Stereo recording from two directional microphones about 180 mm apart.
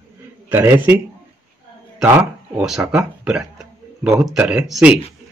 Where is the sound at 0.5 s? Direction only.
10° right (ahead or behind).